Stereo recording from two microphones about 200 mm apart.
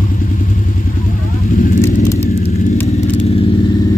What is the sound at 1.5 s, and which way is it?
Vehicle, 45° left (ahead or behind).